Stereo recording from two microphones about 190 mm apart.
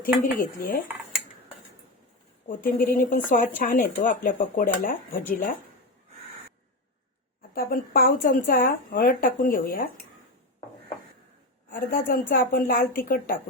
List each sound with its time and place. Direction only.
0.0 s speech: 45° left (ahead or behind)
2.5 s speech: 45° left (ahead or behind)
7.5 s speech: 50° left (ahead or behind)
11.7 s speech: 45° left (ahead or behind)